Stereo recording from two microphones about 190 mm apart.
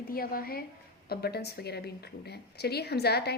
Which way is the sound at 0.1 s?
50° left (ahead or behind).